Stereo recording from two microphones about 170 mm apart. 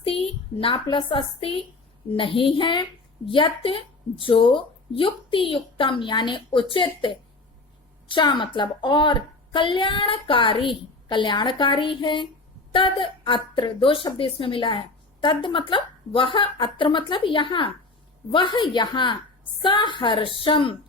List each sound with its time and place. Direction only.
0.0 s a woman's voice: 35° left (ahead or behind)